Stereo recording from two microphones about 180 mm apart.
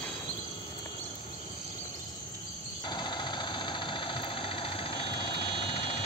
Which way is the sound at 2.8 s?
25° left (ahead or behind).